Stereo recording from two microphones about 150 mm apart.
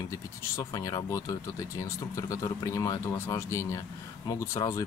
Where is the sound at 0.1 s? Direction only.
20° left (ahead or behind).